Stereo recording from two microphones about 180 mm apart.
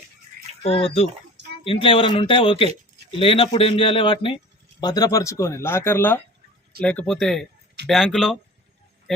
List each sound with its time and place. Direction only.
0.6 s a man's voice: 30° left (ahead or behind); by 8.4 s centre (ahead or behind)